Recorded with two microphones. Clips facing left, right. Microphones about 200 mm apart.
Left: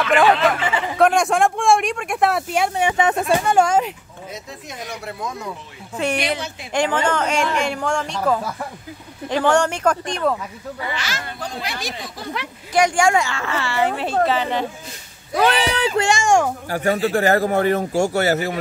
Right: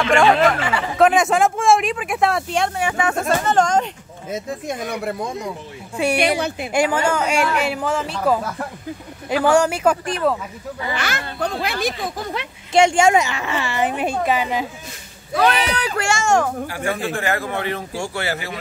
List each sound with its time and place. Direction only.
0.9 s speech: centre (ahead or behind)
2.7 s speech: 20° left (ahead or behind); by 3.9 s 5° left (ahead or behind)
4.3 s speech: 50° right (ahead or behind)
5.9 s speech: 10° right (ahead or behind)
11.0 s speech: 60° right (ahead or behind)
12.4 s speech: 25° right (ahead or behind)
15.3 s speech: 30° left (ahead or behind); by 16.5 s 15° left (ahead or behind)
16.6 s a man's voice: 40° left (ahead or behind)